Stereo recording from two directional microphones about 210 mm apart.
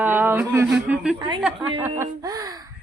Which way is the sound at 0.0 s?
10° right (ahead or behind).